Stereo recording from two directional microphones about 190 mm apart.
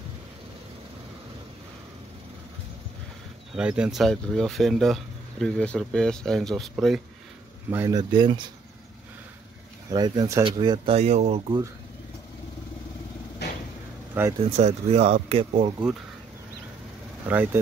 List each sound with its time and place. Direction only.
3.5 s speech: 5° right (ahead or behind)
7.7 s speech: 20° right (ahead or behind)
9.8 s speech: 20° right (ahead or behind)
13.4 s vehicle: 60° left (ahead or behind)
14.4 s speech: 35° right (ahead or behind)
17.3 s speech: 10° right (ahead or behind)